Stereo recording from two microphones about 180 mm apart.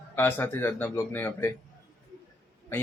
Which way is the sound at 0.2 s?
10° left (ahead or behind).